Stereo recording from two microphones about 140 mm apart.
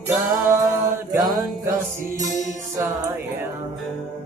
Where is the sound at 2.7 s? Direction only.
15° right (ahead or behind).